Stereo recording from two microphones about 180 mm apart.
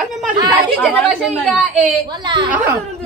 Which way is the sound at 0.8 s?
5° left (ahead or behind).